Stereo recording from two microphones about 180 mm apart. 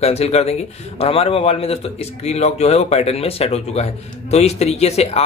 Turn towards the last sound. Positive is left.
turn(degrees=35)  # may be behind; listen again after turning